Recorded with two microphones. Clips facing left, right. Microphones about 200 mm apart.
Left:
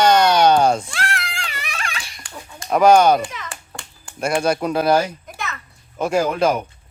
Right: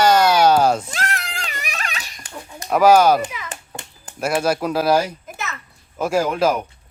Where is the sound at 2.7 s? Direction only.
5° right (ahead or behind).